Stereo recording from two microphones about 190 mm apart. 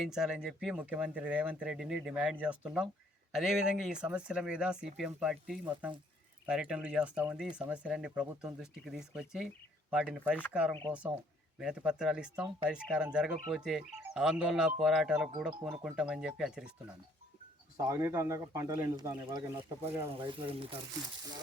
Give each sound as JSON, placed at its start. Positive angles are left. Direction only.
{"t": 0.1, "sound": "speech", "side_deg": -5}
{"t": 17.7, "sound": "speech", "side_deg": -15}